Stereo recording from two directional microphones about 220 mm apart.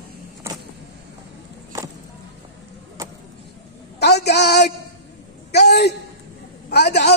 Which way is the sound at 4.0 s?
50° left (ahead or behind).